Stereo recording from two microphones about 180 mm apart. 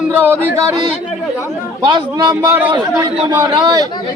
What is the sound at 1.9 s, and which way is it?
Speech, 25° right (ahead or behind).